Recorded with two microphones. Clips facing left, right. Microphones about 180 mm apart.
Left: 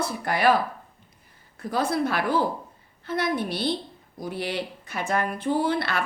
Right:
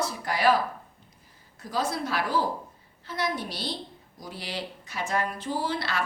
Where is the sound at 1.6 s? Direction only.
60° left (ahead or behind).